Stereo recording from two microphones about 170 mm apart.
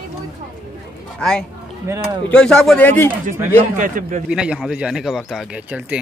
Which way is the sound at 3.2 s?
50° right (ahead or behind).